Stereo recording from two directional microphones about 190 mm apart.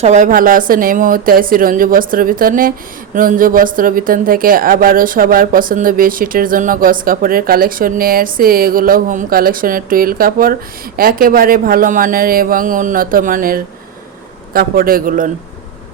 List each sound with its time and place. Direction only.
0.0 s speech: 40° right (ahead or behind)